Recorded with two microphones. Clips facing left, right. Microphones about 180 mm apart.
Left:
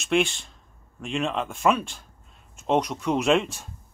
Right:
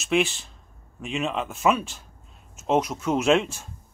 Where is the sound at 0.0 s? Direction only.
Centre (ahead or behind).